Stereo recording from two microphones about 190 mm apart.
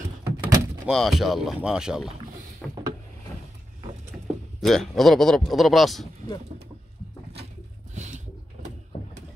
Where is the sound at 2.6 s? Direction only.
5° left (ahead or behind).